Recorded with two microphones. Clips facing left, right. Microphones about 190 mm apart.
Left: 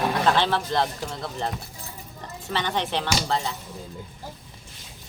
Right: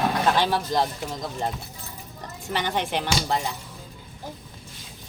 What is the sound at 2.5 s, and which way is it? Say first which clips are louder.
Speech: even; 10° right (ahead or behind).